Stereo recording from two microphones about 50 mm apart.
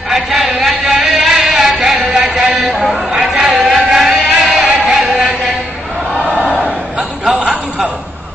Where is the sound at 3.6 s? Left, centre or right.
Right.